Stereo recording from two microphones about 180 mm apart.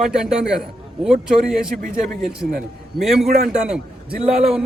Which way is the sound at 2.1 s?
Centre (ahead or behind).